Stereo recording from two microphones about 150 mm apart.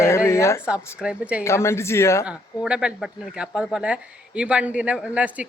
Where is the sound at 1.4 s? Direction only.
20° left (ahead or behind).